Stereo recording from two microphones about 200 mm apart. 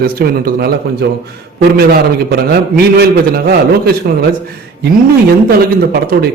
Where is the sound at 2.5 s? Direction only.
50° right (ahead or behind).